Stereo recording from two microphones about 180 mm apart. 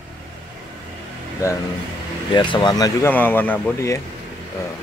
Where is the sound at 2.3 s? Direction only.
25° left (ahead or behind).